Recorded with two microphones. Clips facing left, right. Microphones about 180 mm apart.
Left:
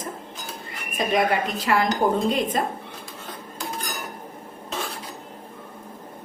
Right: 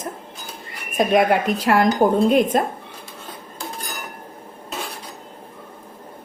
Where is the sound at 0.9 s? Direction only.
55° right (ahead or behind).